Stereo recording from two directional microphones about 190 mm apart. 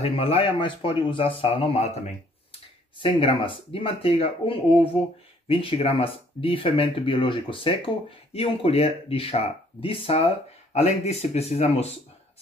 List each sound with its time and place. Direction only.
0.0 s speech: 30° left (ahead or behind)